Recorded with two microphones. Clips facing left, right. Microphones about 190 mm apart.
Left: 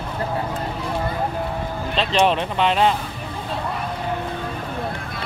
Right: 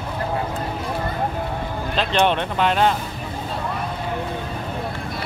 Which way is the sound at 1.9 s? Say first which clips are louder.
Left 1 dB; centre (ahead or behind).